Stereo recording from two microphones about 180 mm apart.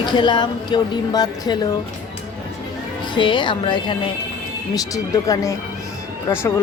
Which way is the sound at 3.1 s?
25° left (ahead or behind).